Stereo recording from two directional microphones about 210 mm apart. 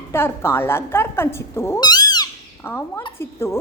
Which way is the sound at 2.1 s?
15° left (ahead or behind).